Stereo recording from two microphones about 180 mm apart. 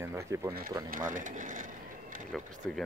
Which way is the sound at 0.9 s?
50° right (ahead or behind).